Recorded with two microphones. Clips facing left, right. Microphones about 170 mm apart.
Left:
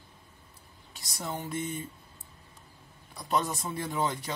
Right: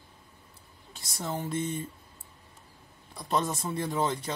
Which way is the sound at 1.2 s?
Centre (ahead or behind).